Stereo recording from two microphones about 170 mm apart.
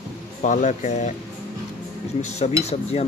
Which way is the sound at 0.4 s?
50° left (ahead or behind).